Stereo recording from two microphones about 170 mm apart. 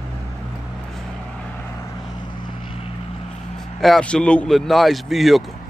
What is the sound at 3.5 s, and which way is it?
A man's voice, centre (ahead or behind).